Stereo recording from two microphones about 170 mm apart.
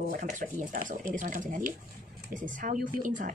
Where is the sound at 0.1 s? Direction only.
50° right (ahead or behind).